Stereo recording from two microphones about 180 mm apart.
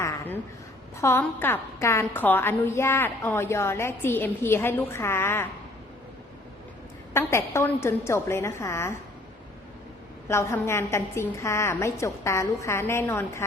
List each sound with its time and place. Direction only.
0.0 s a sound: 15° left (ahead or behind)
1.0 s a woman's voice: 15° left (ahead or behind)
7.1 s a woman's voice: 15° left (ahead or behind)
10.2 s a woman's voice: 15° left (ahead or behind)